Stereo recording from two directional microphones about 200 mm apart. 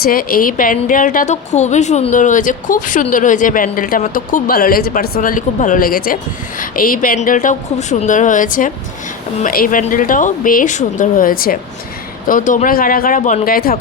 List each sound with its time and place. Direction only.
0.0 s a woman's voice: 45° left (ahead or behind)